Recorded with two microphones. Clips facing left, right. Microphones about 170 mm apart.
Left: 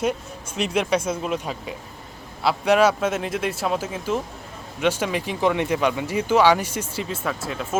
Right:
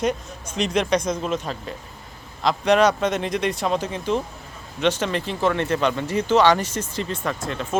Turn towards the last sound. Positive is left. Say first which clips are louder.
# right 1 dB
turn(degrees=5)  # may be behind; listen again after turning